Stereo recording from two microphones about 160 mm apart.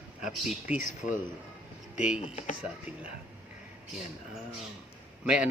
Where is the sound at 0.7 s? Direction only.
50° left (ahead or behind).